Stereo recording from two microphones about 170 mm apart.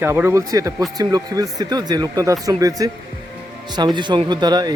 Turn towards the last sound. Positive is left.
turn(degrees=-25)  # may be behind; listen again after turning